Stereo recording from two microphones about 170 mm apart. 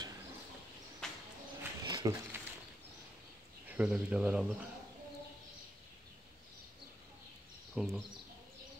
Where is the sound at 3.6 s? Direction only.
5° right (ahead or behind).